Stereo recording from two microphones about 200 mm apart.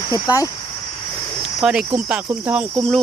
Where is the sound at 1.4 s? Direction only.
5° right (ahead or behind).